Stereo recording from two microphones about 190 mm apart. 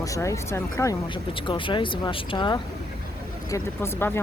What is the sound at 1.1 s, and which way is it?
Speech, 25° left (ahead or behind).